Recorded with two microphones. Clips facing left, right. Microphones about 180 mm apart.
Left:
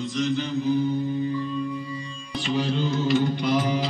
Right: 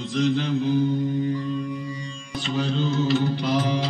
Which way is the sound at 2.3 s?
10° left (ahead or behind).